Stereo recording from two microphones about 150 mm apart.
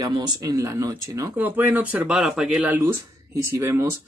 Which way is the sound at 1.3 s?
10° right (ahead or behind).